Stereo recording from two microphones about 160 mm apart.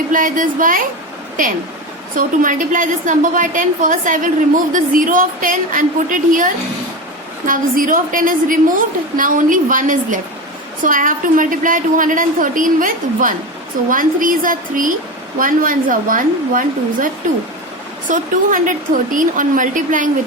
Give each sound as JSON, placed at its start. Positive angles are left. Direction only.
{"t": 0.1, "sound": "a woman's voice", "side_deg": -55}
{"t": 2.1, "sound": "a woman's voice", "side_deg": -55}
{"t": 18.1, "sound": "a woman's voice", "side_deg": -55}